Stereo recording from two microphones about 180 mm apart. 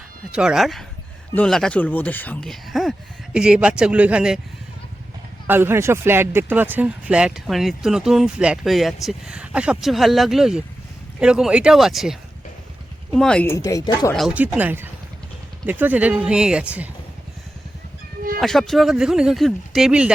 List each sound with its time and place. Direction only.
0.3 s speech: 5° right (ahead or behind)
5.5 s speech: 10° right (ahead or behind)
13.1 s speech: 5° left (ahead or behind); by 14.1 s 20° left (ahead or behind)
14.1 s speech: centre (ahead or behind)
18.3 s speech: centre (ahead or behind)